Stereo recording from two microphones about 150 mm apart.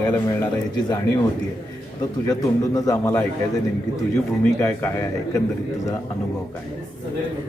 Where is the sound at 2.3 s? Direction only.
25° left (ahead or behind).